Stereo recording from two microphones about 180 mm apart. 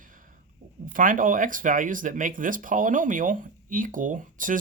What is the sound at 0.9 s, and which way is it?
Speech, 50° right (ahead or behind).